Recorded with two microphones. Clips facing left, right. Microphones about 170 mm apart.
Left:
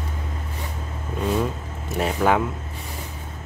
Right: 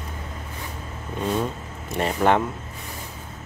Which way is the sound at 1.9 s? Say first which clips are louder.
Even; 5° left (ahead or behind).